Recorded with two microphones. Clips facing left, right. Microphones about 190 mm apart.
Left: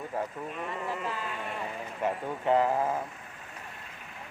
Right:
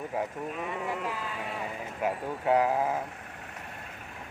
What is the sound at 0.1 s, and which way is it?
Speech, 5° right (ahead or behind).